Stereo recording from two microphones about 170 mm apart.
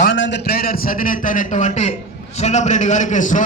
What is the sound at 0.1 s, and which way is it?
A man's voice, 90° left.